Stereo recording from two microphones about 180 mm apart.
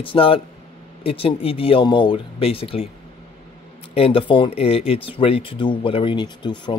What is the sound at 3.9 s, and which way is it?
Speech, 30° left (ahead or behind).